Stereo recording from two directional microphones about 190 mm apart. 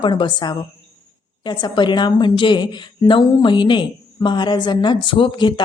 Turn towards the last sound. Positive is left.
turn(degrees=25)  # may be behind; listen again after turning